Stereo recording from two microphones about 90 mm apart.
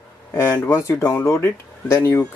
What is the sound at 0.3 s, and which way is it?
Speech, 30° left (ahead or behind).